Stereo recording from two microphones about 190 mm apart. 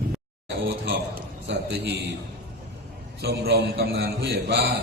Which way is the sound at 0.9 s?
65° right (ahead or behind).